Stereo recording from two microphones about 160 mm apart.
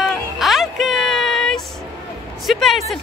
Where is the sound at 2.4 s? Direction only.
Centre (ahead or behind).